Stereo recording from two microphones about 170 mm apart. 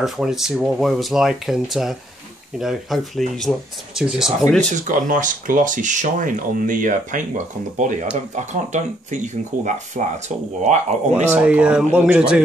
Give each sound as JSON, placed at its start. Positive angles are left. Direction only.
{"t": 0.0, "sound": "speech", "side_deg": 0}
{"t": 4.8, "sound": "speech", "side_deg": -50}
{"t": 8.5, "sound": "speech", "side_deg": -45}
{"t": 11.2, "sound": "speech", "side_deg": -10}